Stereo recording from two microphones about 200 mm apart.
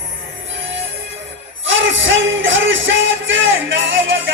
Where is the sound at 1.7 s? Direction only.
70° right (ahead or behind).